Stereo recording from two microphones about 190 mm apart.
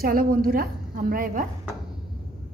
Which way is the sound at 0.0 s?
50° right (ahead or behind).